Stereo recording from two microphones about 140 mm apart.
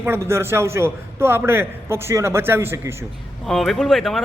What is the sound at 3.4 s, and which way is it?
Speech, centre (ahead or behind).